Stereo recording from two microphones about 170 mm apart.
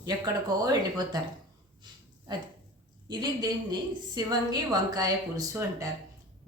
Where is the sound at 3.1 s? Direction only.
25° right (ahead or behind).